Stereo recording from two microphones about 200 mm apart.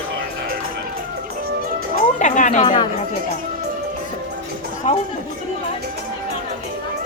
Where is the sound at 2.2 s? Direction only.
40° left (ahead or behind).